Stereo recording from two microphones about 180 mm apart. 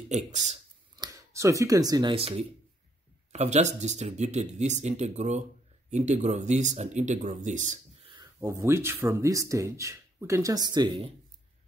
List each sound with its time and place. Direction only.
0.1 s speech: 40° right (ahead or behind)
0.9 s speech: 20° right (ahead or behind); by 7.8 s 45° right (ahead or behind)
8.1 s speech: 20° right (ahead or behind)